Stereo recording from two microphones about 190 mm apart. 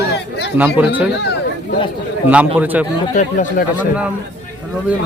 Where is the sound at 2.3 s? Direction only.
10° right (ahead or behind).